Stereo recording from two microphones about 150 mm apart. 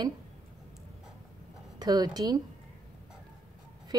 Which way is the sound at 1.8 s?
25° right (ahead or behind).